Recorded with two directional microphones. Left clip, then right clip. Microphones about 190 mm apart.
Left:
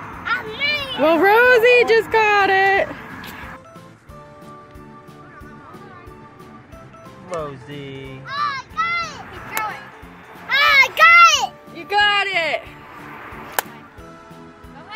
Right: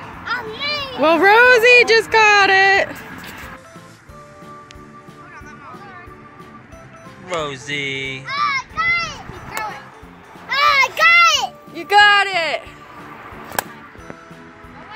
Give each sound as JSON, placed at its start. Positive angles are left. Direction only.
{"t": 0.6, "sound": "speech", "side_deg": 5}
{"t": 7.2, "sound": "speech", "side_deg": -15}
{"t": 8.3, "sound": "children playing", "side_deg": -30}
{"t": 10.6, "sound": "a sound", "side_deg": -5}
{"t": 11.7, "sound": "music", "side_deg": -45}
{"t": 12.1, "sound": "speech", "side_deg": -20}